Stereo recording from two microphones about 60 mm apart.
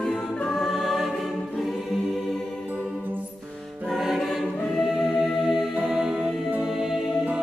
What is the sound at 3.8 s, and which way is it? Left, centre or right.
Choir, centre.